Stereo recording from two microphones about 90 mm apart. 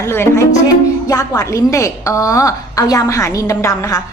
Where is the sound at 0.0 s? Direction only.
30° left (ahead or behind).